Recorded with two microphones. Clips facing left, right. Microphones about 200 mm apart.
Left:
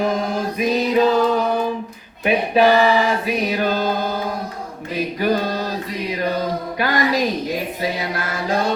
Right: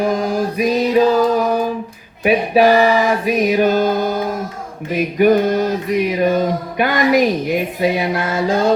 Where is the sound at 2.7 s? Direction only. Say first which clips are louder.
Right 3 dB; 10° right (ahead or behind).